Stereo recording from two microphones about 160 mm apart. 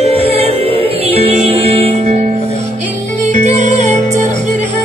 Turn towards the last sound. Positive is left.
turn(degrees=-45)  # may be behind; listen again after turning